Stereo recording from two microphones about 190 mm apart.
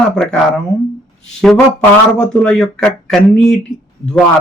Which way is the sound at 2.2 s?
5° left (ahead or behind).